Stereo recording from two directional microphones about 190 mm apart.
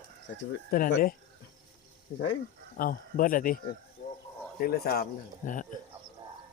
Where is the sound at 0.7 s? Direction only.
50° left (ahead or behind).